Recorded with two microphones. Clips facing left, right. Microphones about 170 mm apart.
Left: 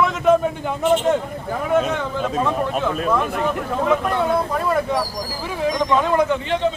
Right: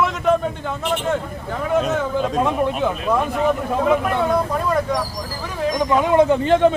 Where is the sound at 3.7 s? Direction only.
5° right (ahead or behind).